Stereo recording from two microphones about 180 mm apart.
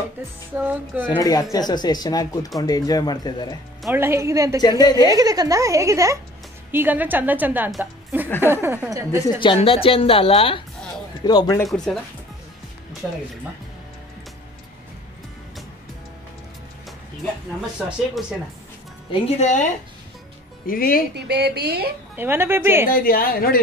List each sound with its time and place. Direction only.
0.6 s a woman's voice: 10° right (ahead or behind)
1.0 s speech: 25° left (ahead or behind)
3.9 s a woman's voice: 15° right (ahead or behind)
4.6 s speech: 20° left (ahead or behind)
4.9 s a woman's voice: 20° right (ahead or behind)
9.2 s a woman's voice: 25° left (ahead or behind)
11.6 s speech: centre (ahead or behind)
13.0 s a woman's voice: 5° right (ahead or behind)
19.1 s a woman's voice: 35° left (ahead or behind)
20.6 s a woman's voice: 50° left (ahead or behind)
21.1 s speech: 65° right (ahead or behind)
22.1 s a woman's voice: 10° right (ahead or behind)
22.8 s a woman's voice: 55° left (ahead or behind)